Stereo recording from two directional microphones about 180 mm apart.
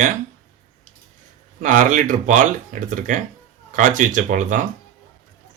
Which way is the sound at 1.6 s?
45° right (ahead or behind).